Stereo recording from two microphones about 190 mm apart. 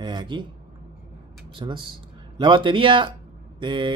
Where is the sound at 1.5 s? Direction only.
25° right (ahead or behind).